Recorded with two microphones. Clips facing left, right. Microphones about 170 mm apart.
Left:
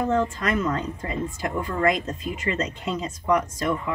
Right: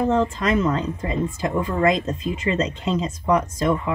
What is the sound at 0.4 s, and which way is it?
Speech, 25° right (ahead or behind).